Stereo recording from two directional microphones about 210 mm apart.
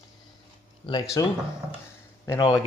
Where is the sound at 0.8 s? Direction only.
25° left (ahead or behind).